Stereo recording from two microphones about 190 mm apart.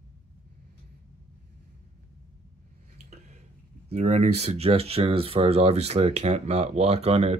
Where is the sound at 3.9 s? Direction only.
35° right (ahead or behind).